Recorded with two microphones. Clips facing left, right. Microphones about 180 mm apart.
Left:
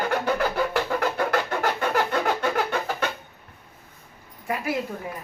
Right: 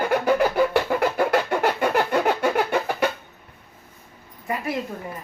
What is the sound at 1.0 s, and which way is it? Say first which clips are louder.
Vehicle: right 3 dB; 10° right (ahead or behind).